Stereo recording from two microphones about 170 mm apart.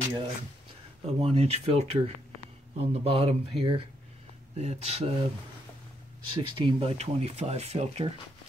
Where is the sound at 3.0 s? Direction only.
35° right (ahead or behind).